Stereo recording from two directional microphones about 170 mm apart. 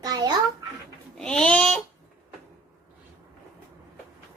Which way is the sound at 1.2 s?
5° left (ahead or behind).